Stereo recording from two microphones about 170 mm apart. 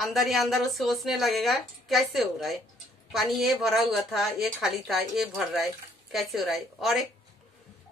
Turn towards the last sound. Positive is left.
turn(degrees=0)  # may be behind; listen again after turning